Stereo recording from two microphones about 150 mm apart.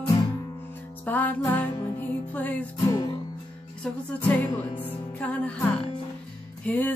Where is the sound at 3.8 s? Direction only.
10° left (ahead or behind).